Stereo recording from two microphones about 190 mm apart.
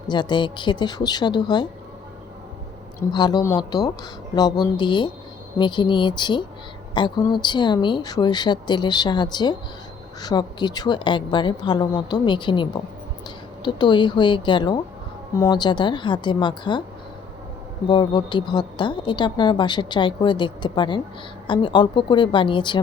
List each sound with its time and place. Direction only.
0.1 s a woman's voice: 25° left (ahead or behind)
3.1 s a woman's voice: 20° left (ahead or behind)
17.8 s a woman's voice: 25° left (ahead or behind)